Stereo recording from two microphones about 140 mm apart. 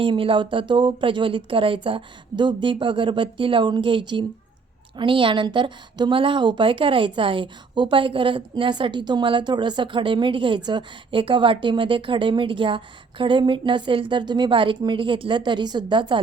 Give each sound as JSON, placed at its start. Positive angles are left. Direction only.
{"t": 0.0, "sound": "a woman's voice", "side_deg": -40}